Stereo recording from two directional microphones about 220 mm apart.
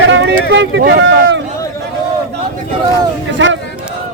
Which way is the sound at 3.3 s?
55° right (ahead or behind).